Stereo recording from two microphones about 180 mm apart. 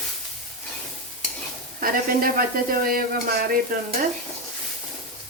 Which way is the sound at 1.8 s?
50° right (ahead or behind).